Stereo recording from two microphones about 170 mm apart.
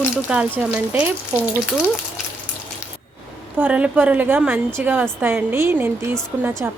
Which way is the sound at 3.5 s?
10° right (ahead or behind).